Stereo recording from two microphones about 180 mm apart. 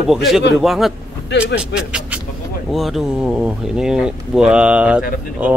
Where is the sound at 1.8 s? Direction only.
5° right (ahead or behind).